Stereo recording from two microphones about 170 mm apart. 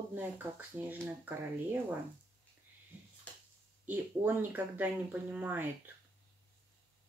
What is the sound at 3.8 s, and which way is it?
Speech, 10° right (ahead or behind).